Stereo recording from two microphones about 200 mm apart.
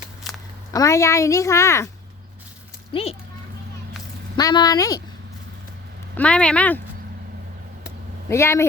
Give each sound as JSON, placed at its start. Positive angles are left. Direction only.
{"t": 0.3, "sound": "a sound", "side_deg": 0}
{"t": 0.7, "sound": "a woman's voice", "side_deg": 15}
{"t": 2.9, "sound": "speech", "side_deg": 30}
{"t": 4.4, "sound": "speech", "side_deg": 20}
{"t": 6.1, "sound": "speech", "side_deg": 5}
{"t": 8.3, "sound": "a woman's voice", "side_deg": 15}